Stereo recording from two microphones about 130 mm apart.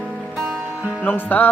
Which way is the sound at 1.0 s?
10° left (ahead or behind).